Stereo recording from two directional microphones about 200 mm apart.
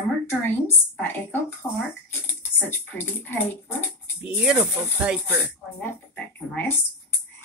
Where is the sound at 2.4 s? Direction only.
10° left (ahead or behind).